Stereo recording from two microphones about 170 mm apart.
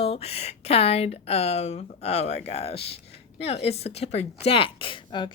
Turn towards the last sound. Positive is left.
turn(degrees=30)  # may be behind; listen again after turning